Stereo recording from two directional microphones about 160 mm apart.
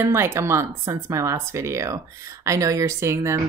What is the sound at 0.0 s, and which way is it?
Speech, 15° right (ahead or behind).